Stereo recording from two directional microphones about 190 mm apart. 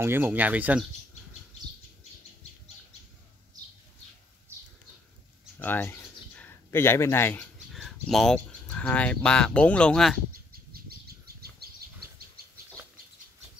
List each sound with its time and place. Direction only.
0.0 s speech: 10° right (ahead or behind)
5.6 s bird: 10° left (ahead or behind)
7.7 s speech: centre (ahead or behind)
10.7 s bird: 55° right (ahead or behind)
11.6 s a sound: 55° right (ahead or behind)